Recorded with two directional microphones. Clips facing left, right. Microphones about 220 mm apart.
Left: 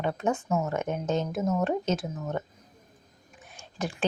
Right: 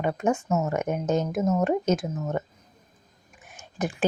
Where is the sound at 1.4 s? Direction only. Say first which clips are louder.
Right 3 dB; 15° right (ahead or behind).